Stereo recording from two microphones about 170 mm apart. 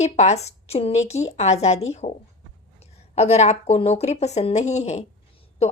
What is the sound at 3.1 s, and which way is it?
Speech, 40° left (ahead or behind).